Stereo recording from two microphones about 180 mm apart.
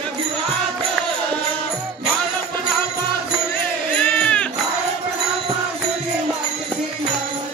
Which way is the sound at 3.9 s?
5° left (ahead or behind).